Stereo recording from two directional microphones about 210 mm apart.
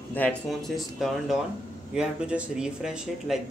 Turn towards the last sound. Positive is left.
turn(degrees=-5)  # may be behind; listen again after turning